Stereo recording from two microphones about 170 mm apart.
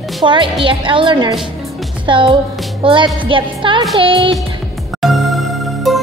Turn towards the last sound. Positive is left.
turn(degrees=0)  # may be behind; listen again after turning